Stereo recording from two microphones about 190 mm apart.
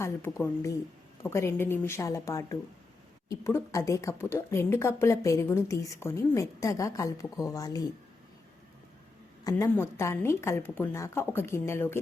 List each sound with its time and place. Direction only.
0.0 s a woman's voice: 15° left (ahead or behind)
9.4 s a woman's voice: 20° left (ahead or behind)